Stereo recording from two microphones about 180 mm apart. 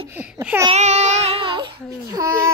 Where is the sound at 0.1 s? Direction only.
10° right (ahead or behind).